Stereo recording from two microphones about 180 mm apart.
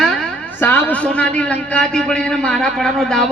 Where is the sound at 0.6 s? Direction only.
10° left (ahead or behind).